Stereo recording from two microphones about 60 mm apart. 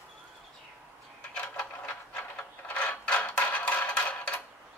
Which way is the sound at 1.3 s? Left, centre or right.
Left.